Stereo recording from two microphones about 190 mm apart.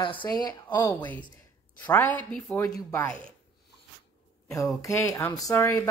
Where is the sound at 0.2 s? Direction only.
15° left (ahead or behind).